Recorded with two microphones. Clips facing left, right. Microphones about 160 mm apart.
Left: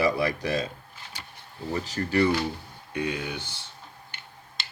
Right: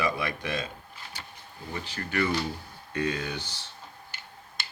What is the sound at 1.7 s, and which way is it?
Speech, 40° left (ahead or behind).